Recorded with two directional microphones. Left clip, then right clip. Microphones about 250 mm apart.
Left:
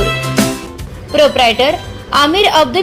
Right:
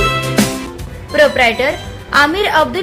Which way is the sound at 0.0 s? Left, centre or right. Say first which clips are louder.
Even; centre.